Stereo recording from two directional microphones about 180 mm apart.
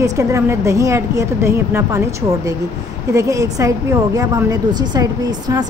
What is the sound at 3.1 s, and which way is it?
A woman's voice, 15° right (ahead or behind).